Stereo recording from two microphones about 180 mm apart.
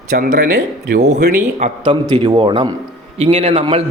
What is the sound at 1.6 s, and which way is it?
A man's voice, 30° right (ahead or behind).